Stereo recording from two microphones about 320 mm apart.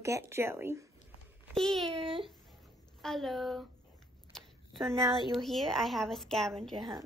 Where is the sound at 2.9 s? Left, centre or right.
Centre.